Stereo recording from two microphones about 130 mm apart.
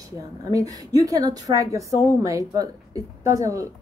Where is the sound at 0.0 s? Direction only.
25° right (ahead or behind).